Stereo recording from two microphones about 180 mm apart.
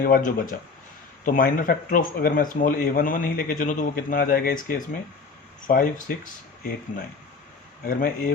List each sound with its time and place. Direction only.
0.0 s speech: 50° left (ahead or behind)
7.9 s speech: 50° left (ahead or behind)